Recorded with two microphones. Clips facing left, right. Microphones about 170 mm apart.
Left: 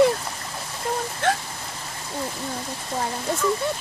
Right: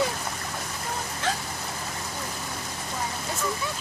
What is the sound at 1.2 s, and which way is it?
Speech, 55° left (ahead or behind).